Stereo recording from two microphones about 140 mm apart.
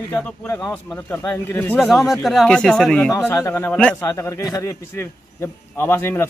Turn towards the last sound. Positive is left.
turn(degrees=15)  # may be behind; listen again after turning